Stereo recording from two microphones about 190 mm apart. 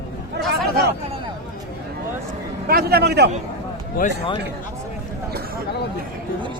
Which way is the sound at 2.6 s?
55° right (ahead or behind).